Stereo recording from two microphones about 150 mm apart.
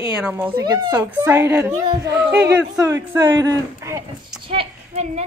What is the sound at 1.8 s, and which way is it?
Speech, 25° right (ahead or behind).